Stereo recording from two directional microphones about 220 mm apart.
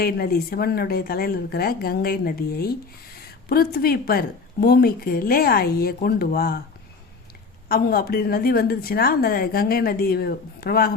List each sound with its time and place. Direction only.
0.0 s a woman's voice: 45° left (ahead or behind)
7.7 s a woman's voice: 40° left (ahead or behind)